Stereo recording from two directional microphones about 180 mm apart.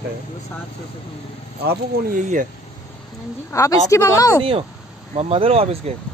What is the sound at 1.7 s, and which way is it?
Speech, 50° right (ahead or behind).